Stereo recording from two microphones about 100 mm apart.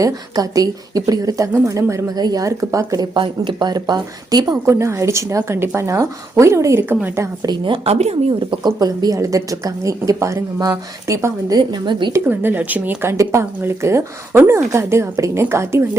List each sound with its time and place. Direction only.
0.0 s a woman's voice: 35° right (ahead or behind)
3.2 s speech: 50° right (ahead or behind)
4.6 s speech: 30° right (ahead or behind)
7.4 s speech: 50° right (ahead or behind)
7.9 s speech: 85° right
8.6 s a woman's voice: 40° right (ahead or behind)
12.2 s speech: 20° right (ahead or behind)